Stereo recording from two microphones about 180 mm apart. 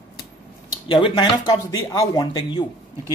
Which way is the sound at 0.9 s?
30° left (ahead or behind).